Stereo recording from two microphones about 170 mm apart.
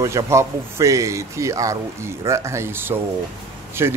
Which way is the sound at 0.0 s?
15° right (ahead or behind).